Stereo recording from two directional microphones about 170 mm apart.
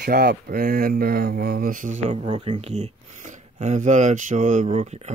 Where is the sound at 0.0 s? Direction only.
60° right (ahead or behind).